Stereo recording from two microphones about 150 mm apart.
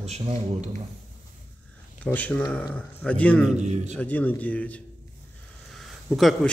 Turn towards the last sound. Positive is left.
turn(degrees=0)  # may be behind; listen again after turning